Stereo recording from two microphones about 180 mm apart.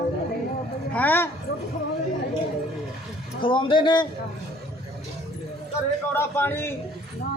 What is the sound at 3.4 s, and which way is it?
Speech, 30° left (ahead or behind).